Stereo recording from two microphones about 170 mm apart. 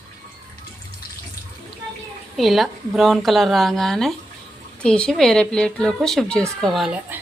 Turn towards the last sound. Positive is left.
turn(degrees=-5)  # may be behind; listen again after turning